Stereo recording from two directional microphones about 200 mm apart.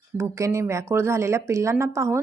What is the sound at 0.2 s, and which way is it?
Speech, 15° right (ahead or behind).